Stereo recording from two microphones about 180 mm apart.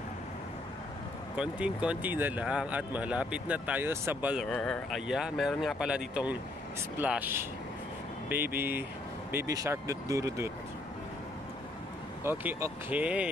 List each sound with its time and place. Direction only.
1.3 s speech: 5° right (ahead or behind)
4.5 s speech: 5° left (ahead or behind); by 10.5 s 15° right (ahead or behind)
12.2 s speech: 15° right (ahead or behind)